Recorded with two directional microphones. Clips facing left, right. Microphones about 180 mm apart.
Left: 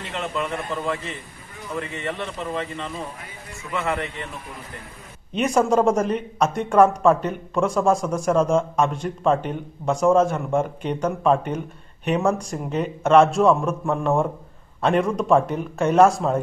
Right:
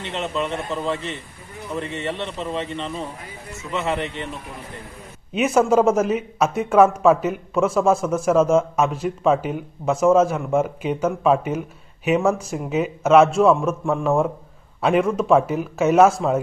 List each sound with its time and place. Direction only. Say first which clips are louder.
0.0 s a man's voice: right 2 dB; 25° right (ahead or behind)
5.3 s a man's voice: right 2 dB; 5° right (ahead or behind)